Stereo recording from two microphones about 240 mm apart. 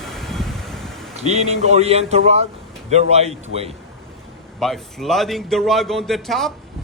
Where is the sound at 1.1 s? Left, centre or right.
Right.